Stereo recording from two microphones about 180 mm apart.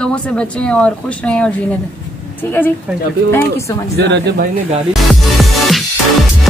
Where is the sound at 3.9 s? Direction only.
70° right (ahead or behind).